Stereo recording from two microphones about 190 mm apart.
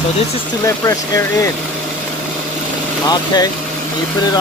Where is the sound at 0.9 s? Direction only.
15° left (ahead or behind).